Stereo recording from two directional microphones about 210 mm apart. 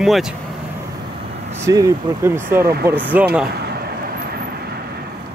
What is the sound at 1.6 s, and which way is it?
Speech, 15° right (ahead or behind).